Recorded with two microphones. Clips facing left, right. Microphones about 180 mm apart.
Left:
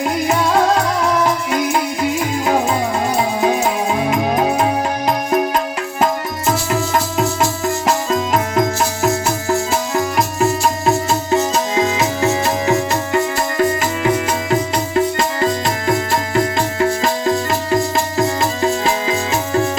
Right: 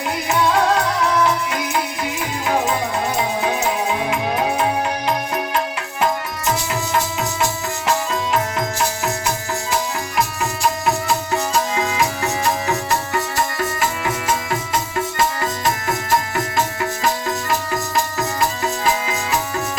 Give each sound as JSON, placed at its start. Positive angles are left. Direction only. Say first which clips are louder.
{"t": 7.9, "sound": "music", "louder": "left 2 dB", "side_deg": 40}
{"t": 10.8, "sound": "music", "louder": "left 4 dB", "side_deg": 20}
{"t": 17.2, "sound": "music", "louder": "left 5 dB", "side_deg": 25}